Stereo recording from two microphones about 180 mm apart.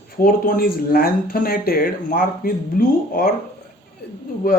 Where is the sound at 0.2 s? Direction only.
55° left (ahead or behind).